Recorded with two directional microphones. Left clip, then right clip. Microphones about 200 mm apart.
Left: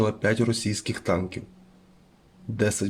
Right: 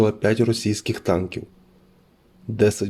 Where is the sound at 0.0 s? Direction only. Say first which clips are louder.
Right 5 dB; 30° right (ahead or behind).